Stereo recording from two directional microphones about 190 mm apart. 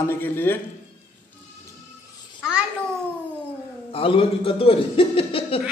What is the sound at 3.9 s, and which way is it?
A man's voice, 30° left (ahead or behind).